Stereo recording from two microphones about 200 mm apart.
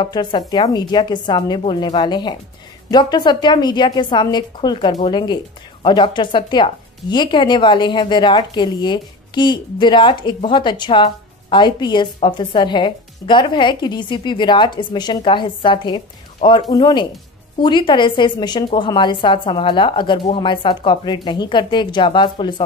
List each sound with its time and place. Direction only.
0.0 s a woman's voice: 20° left (ahead or behind)